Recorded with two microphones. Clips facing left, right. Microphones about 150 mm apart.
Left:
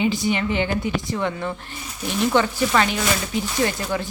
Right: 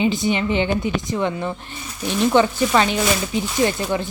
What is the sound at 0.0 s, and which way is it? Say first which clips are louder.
Speech: right 2 dB; 20° right (ahead or behind).